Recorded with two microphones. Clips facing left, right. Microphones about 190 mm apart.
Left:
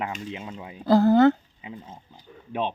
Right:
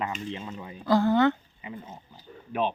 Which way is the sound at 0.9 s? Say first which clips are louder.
Left 5 dB; 35° left (ahead or behind).